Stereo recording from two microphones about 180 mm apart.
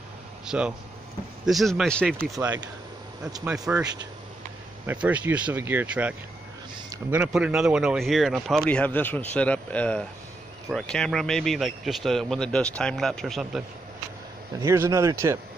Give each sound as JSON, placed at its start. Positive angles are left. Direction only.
{"t": 0.5, "sound": "speech", "side_deg": -5}
{"t": 4.8, "sound": "speech", "side_deg": -10}
{"t": 14.6, "sound": "speech", "side_deg": -15}